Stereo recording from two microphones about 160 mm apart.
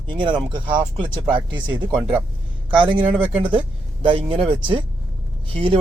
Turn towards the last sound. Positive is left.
turn(degrees=-35)  # may be behind; listen again after turning